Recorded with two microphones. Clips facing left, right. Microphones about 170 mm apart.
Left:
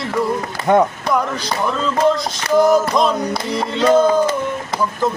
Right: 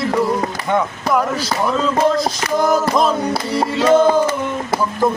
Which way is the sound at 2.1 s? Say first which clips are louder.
Left 2 dB; centre (ahead or behind).